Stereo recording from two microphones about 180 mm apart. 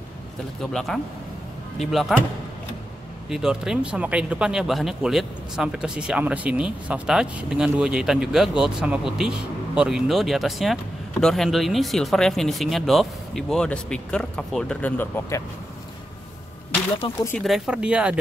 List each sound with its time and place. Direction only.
0.6 s speech: centre (ahead or behind)
3.3 s speech: 5° right (ahead or behind); by 15.4 s 15° left (ahead or behind)
17.0 s speech: 30° left (ahead or behind)
17.4 s speech: 5° right (ahead or behind)